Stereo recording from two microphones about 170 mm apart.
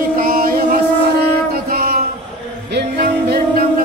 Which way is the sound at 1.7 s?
55° right (ahead or behind).